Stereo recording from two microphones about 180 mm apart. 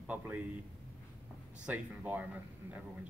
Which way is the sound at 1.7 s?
10° right (ahead or behind).